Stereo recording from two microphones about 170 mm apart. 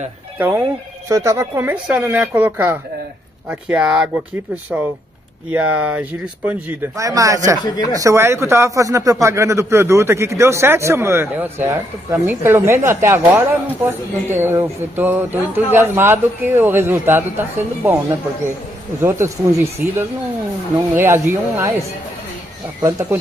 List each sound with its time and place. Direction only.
0.4 s speech: 15° right (ahead or behind)
7.0 s speech: 20° right (ahead or behind)
7.6 s speech: 25° left (ahead or behind)
7.9 s speech: 20° right (ahead or behind)
18.9 s speech: 15° right (ahead or behind)